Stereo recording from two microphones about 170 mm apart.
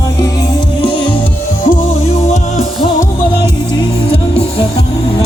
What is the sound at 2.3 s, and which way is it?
Music, 45° left (ahead or behind).